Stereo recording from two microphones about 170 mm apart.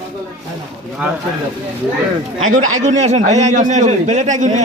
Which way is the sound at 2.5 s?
45° right (ahead or behind).